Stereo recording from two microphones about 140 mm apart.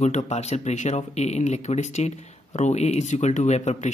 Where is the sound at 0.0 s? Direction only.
55° left (ahead or behind).